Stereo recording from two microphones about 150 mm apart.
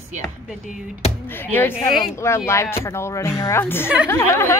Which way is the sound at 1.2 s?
15° left (ahead or behind).